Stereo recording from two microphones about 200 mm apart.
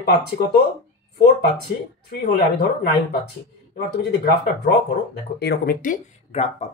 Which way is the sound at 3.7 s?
55° left (ahead or behind).